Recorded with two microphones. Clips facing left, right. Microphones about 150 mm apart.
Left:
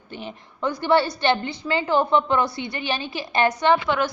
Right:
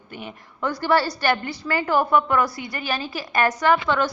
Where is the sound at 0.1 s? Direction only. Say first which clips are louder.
Left 1 dB; 30° left (ahead or behind).